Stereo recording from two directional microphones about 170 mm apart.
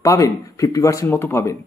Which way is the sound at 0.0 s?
20° left (ahead or behind).